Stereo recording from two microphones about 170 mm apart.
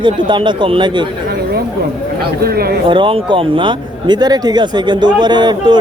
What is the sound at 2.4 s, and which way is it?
Speech, 65° right (ahead or behind).